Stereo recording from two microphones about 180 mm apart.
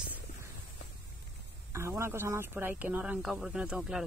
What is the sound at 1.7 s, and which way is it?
Speech, 15° right (ahead or behind).